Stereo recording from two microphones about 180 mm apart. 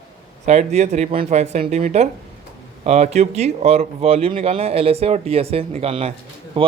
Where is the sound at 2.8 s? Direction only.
40° right (ahead or behind).